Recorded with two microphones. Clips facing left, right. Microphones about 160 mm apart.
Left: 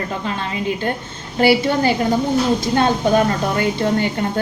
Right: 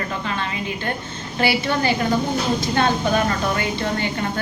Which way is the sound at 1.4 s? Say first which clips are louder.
Left 6 dB; 40° left (ahead or behind).